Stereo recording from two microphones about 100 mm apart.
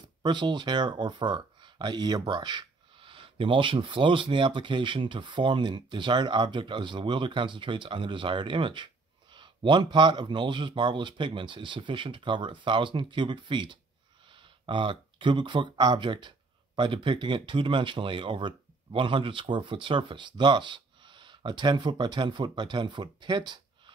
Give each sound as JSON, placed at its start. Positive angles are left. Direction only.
{"t": 0.2, "sound": "speech", "side_deg": -50}